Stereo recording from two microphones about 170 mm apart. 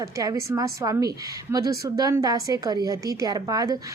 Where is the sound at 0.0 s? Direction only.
20° right (ahead or behind).